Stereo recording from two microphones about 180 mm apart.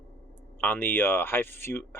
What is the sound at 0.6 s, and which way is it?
Speech, 10° left (ahead or behind).